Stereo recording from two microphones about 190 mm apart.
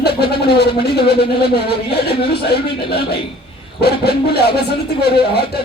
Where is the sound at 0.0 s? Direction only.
55° left (ahead or behind).